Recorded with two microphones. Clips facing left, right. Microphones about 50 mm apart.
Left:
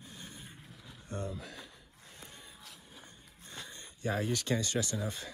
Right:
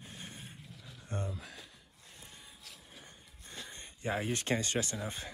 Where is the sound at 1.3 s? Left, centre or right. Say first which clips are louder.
Left 3 dB; centre.